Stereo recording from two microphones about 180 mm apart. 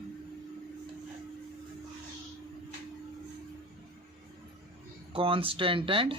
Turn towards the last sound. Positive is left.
turn(degrees=-30)  # may be behind; listen again after turning